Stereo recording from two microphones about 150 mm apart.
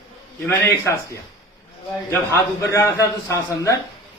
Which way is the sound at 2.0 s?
15° left (ahead or behind).